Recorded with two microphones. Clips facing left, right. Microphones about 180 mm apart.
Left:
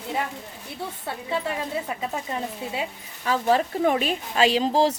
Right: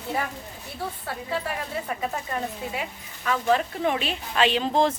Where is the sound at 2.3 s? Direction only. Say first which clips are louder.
Even; 25° left (ahead or behind).